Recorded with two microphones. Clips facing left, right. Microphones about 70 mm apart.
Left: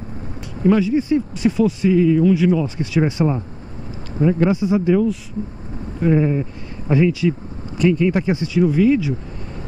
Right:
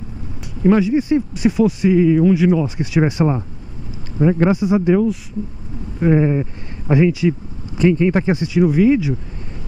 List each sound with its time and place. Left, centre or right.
0.7 s speech: right